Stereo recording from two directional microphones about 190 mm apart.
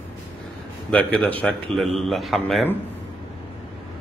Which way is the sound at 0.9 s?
5° left (ahead or behind).